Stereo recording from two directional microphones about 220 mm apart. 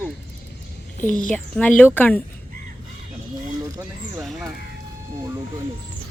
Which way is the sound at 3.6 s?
15° right (ahead or behind).